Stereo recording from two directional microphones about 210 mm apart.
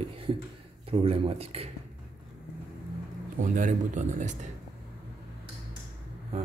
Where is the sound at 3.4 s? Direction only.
40° right (ahead or behind).